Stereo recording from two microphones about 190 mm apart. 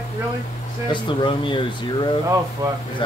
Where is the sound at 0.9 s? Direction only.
25° left (ahead or behind).